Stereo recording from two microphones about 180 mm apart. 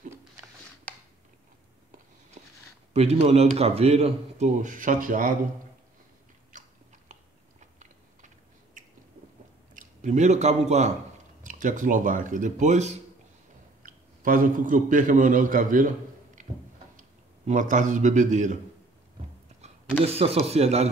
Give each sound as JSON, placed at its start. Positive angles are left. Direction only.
{"t": 2.4, "sound": "a sound", "side_deg": -40}
{"t": 2.9, "sound": "a man's voice", "side_deg": -35}
{"t": 6.5, "sound": "biting", "side_deg": -45}
{"t": 8.8, "sound": "squish", "side_deg": -45}
{"t": 9.8, "sound": "a man's voice", "side_deg": -40}
{"t": 16.4, "sound": "a sound", "side_deg": -45}
{"t": 17.5, "sound": "speech", "side_deg": -45}
{"t": 20.2, "sound": "a man's voice", "side_deg": -35}